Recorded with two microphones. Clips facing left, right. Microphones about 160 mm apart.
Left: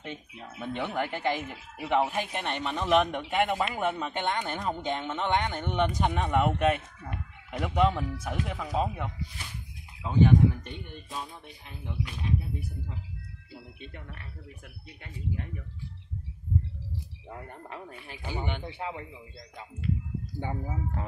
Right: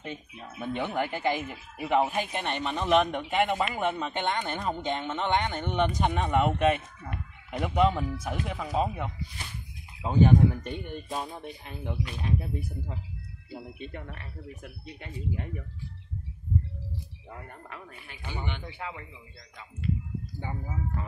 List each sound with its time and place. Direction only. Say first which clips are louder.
0.6 s speech: right 1 dB; 5° right (ahead or behind)
10.0 s speech: right 1 dB; 45° right (ahead or behind)
14.6 s speech: right 5 dB; 25° right (ahead or behind)
17.6 s speech: left 3 dB; 30° left (ahead or behind)
18.6 s speech: left 3 dB; 30° left (ahead or behind)
20.3 s speech: left 3 dB; 65° left (ahead or behind)